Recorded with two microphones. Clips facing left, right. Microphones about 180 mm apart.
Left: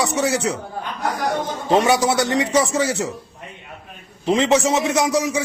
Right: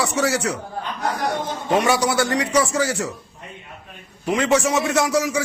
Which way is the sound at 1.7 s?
25° left (ahead or behind).